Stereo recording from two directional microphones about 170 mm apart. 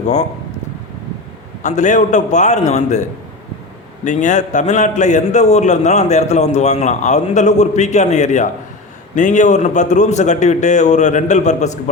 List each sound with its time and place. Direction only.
0.0 s speech: 45° left (ahead or behind)
1.6 s a man's voice: 45° left (ahead or behind)
4.0 s a man's voice: 45° left (ahead or behind)